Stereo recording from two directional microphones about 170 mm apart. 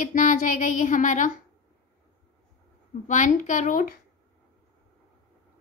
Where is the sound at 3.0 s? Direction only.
45° left (ahead or behind).